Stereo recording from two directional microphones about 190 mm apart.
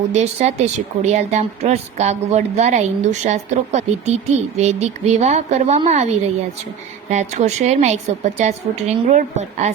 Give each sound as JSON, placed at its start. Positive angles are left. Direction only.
{"t": 0.1, "sound": "speech", "side_deg": -35}